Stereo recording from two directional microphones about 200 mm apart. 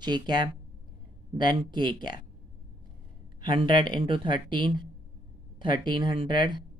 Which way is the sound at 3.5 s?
25° right (ahead or behind).